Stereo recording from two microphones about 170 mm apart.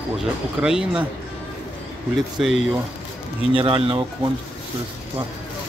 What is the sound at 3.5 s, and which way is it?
Speech, 30° right (ahead or behind).